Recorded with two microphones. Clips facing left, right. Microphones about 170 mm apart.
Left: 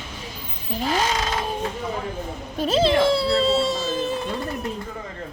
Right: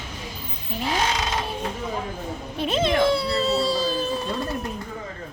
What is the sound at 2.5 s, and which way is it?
Speech, 35° left (ahead or behind).